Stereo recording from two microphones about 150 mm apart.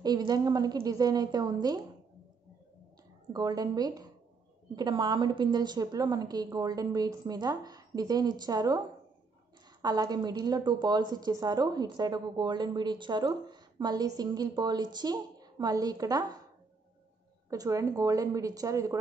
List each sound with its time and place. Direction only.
0.0 s a woman's voice: 25° right (ahead or behind)
3.3 s a woman's voice: 25° right (ahead or behind)
17.5 s a woman's voice: 20° right (ahead or behind)